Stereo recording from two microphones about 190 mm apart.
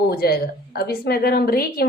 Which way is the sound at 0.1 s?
55° left (ahead or behind).